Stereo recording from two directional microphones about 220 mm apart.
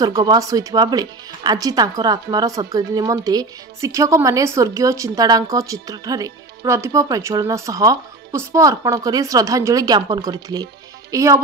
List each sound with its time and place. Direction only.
0.0 s speech: 15° right (ahead or behind)